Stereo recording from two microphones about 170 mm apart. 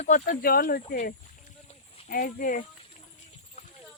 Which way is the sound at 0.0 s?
50° left (ahead or behind).